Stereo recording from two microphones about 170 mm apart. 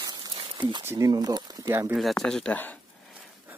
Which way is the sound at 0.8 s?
15° right (ahead or behind).